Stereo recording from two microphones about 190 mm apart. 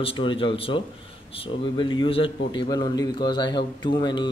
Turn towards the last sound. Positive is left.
turn(degrees=25)  # may be behind; listen again after turning